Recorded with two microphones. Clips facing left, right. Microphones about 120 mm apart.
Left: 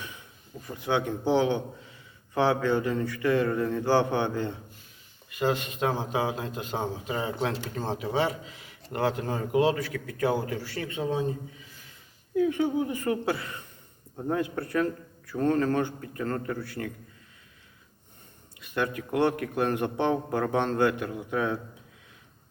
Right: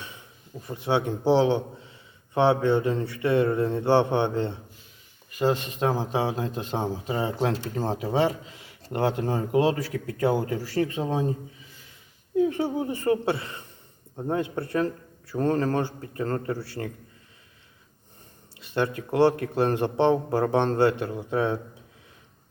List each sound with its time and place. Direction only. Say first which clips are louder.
0.6 s a man's voice: right 2 dB; 25° right (ahead or behind)
12.4 s a man's voice: right 1 dB; 35° right (ahead or behind)
18.6 s a man's voice: right 3 dB; 30° right (ahead or behind)